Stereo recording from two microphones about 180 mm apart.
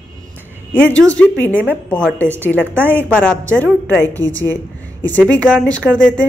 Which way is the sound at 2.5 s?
10° right (ahead or behind).